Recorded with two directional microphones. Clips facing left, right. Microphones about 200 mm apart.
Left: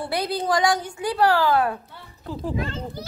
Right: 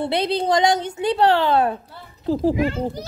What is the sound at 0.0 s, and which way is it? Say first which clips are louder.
Speech: right 4 dB; 25° right (ahead or behind).